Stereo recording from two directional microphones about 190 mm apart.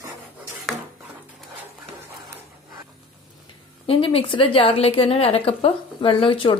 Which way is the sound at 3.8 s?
30° left (ahead or behind).